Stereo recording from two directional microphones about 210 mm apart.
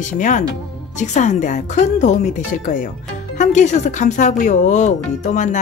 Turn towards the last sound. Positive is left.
turn(degrees=35)  # may be behind; listen again after turning